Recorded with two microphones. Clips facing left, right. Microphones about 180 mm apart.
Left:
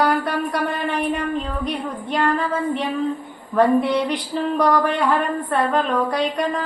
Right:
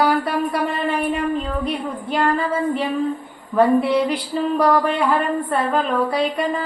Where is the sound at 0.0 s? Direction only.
5° right (ahead or behind).